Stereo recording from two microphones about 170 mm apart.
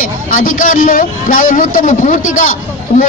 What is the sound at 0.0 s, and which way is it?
Speech, 50° left (ahead or behind).